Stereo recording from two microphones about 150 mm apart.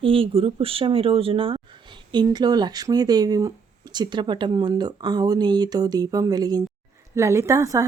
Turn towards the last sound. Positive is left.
turn(degrees=-20)  # may be behind; listen again after turning